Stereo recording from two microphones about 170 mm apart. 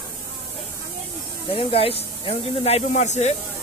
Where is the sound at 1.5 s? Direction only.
35° left (ahead or behind).